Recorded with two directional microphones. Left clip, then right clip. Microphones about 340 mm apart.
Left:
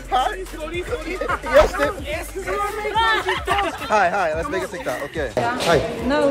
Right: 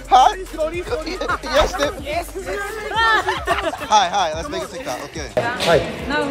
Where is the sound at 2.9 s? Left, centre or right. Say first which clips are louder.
Right 3 dB; centre.